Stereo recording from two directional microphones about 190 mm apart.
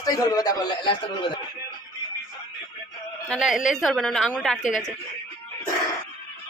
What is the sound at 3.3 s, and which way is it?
A woman's voice, centre (ahead or behind).